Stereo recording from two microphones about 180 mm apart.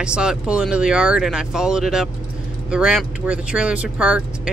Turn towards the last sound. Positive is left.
turn(degrees=-5)  # may be behind; listen again after turning